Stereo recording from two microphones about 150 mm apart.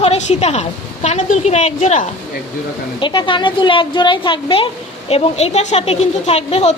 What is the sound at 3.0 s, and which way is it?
A woman's voice, 35° left (ahead or behind).